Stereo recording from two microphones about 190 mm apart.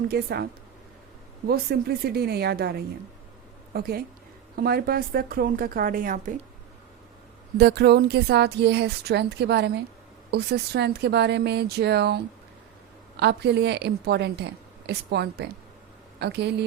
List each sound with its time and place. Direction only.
0.1 s a woman's voice: 55° right (ahead or behind)
1.5 s a woman's voice: 55° right (ahead or behind)
7.6 s a woman's voice: 60° right (ahead or behind)